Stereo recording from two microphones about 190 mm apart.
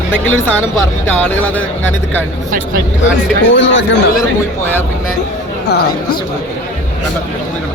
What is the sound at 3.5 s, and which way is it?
Speech, 75° left (ahead or behind).